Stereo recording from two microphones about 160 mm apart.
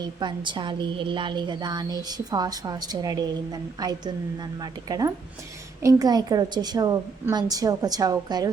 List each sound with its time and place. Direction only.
0.0 s a woman's voice: 30° right (ahead or behind)